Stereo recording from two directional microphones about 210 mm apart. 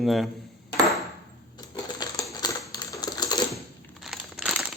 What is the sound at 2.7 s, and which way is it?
Typing, 20° left (ahead or behind).